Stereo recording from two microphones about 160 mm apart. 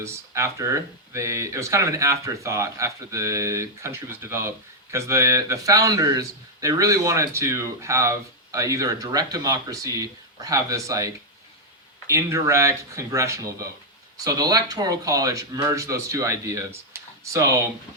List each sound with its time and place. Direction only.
0.0 s speech: 15° right (ahead or behind)